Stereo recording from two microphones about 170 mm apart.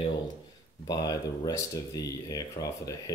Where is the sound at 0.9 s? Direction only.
25° left (ahead or behind).